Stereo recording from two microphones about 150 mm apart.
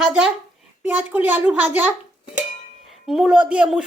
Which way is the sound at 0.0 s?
5° right (ahead or behind).